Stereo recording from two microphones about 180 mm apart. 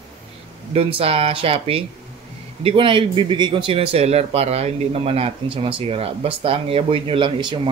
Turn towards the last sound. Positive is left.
turn(degrees=-25)  # may be behind; listen again after turning